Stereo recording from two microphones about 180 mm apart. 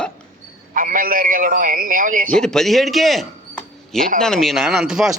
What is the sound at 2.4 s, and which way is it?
A man's voice, 5° left (ahead or behind).